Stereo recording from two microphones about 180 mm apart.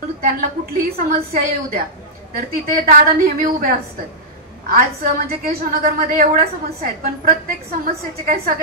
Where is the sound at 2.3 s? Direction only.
50° right (ahead or behind).